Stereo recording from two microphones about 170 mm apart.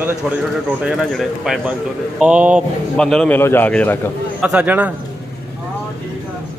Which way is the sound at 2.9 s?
5° left (ahead or behind).